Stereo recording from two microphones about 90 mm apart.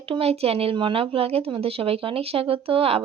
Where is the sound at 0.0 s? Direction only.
90° right.